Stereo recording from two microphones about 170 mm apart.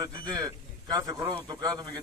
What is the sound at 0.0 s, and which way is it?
Speech, 25° right (ahead or behind).